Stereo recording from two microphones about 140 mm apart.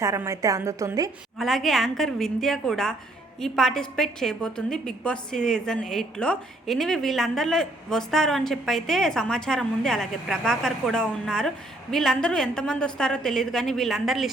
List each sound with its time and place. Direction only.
0.0 s a woman's voice: 20° right (ahead or behind)
1.4 s a woman's voice: centre (ahead or behind)